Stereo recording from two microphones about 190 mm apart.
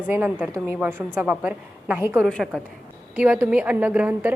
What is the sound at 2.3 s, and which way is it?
A woman's voice, 5° left (ahead or behind).